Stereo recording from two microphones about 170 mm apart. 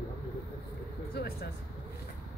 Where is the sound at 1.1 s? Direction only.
65° left (ahead or behind).